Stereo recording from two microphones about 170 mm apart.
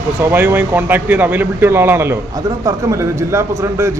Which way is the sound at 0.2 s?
15° right (ahead or behind).